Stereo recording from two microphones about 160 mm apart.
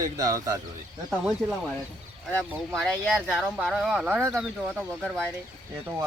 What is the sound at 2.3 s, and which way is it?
Speech, 5° left (ahead or behind).